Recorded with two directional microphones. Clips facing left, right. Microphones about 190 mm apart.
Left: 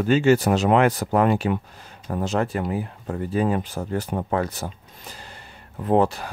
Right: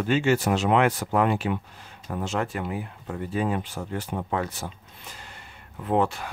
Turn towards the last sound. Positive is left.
turn(degrees=35)  # may be behind; listen again after turning